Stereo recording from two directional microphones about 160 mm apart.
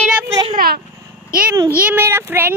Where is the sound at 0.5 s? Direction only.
70° right (ahead or behind).